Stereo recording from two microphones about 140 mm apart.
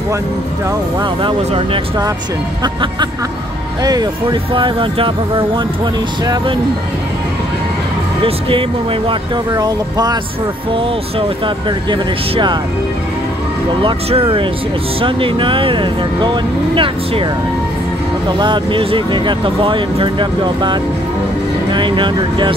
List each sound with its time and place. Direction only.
0.9 s speech: 35° right (ahead or behind)
8.2 s speech: 40° right (ahead or behind)
10.7 s speech: 40° right (ahead or behind)
13.8 s speech: 40° right (ahead or behind)
18.3 s speech: 35° right (ahead or behind)